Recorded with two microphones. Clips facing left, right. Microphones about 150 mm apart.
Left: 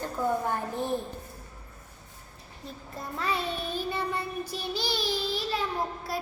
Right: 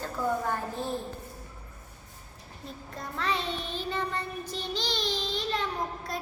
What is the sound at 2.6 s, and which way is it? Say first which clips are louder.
Child singing: left 1 dB; 5° left (ahead or behind).